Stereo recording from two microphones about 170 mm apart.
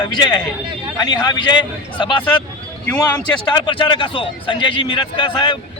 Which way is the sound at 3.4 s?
30° left (ahead or behind).